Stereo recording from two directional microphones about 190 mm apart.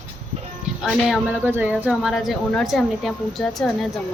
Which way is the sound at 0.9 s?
Centre (ahead or behind).